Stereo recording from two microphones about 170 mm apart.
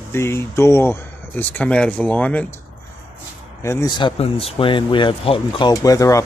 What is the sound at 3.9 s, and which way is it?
Speech, 30° left (ahead or behind).